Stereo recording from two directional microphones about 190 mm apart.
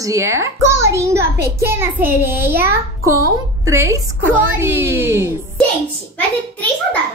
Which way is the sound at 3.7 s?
15° right (ahead or behind).